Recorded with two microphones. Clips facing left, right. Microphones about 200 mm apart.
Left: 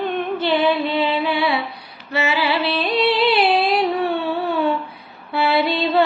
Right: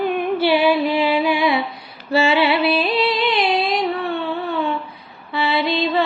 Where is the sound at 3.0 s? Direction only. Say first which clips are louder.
Left 2 dB; 70° left (ahead or behind).